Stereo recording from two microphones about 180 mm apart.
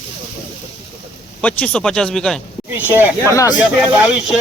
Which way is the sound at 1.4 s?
5° left (ahead or behind).